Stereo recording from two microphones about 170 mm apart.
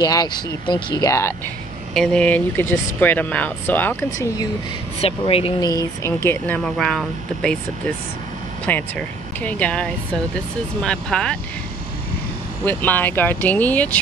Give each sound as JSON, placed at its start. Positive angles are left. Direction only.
{"t": 0.0, "sound": "speech", "side_deg": 20}
{"t": 2.0, "sound": "speech", "side_deg": 5}
{"t": 5.0, "sound": "speech", "side_deg": 35}
{"t": 5.7, "sound": "speech", "side_deg": 20}
{"t": 8.6, "sound": "speech", "side_deg": 10}
{"t": 12.6, "sound": "speech", "side_deg": 10}